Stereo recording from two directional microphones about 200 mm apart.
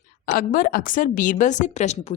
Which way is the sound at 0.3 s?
45° left (ahead or behind).